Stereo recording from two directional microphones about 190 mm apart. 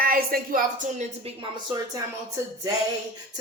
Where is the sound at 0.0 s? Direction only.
50° right (ahead or behind).